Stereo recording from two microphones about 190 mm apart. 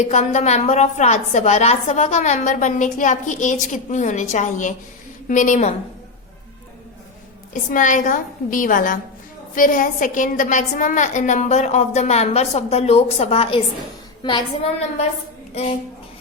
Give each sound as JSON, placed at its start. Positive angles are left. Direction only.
{"t": 0.1, "sound": "a woman's voice", "side_deg": 40}
{"t": 7.5, "sound": "a woman's voice", "side_deg": 45}